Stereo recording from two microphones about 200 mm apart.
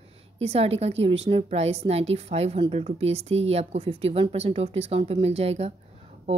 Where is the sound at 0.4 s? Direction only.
30° right (ahead or behind).